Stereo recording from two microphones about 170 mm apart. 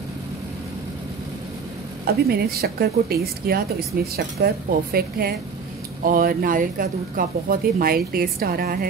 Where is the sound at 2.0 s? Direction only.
70° right (ahead or behind).